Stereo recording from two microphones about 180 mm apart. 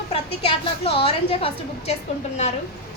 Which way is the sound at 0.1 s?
30° left (ahead or behind).